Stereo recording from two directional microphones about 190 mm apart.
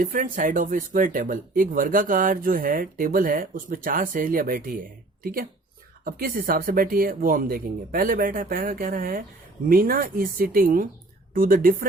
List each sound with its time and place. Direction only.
0.0 s speech: 45° right (ahead or behind)